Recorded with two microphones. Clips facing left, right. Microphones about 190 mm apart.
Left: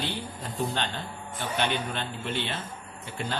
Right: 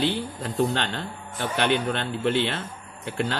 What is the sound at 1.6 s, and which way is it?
Speech, 60° right (ahead or behind).